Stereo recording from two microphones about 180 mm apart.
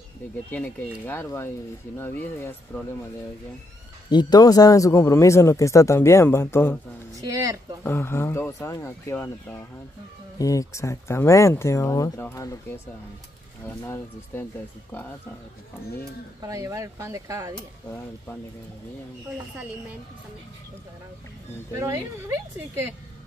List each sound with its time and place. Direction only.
0.5 s speech: 10° left (ahead or behind)
4.1 s speech: 25° left (ahead or behind)
7.2 s speech: 20° right (ahead or behind)
7.8 s speech: 10° left (ahead or behind)
16.3 s speech: 20° right (ahead or behind)
21.7 s speech: 15° right (ahead or behind)